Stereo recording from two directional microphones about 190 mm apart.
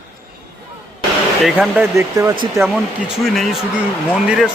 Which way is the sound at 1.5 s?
5° right (ahead or behind).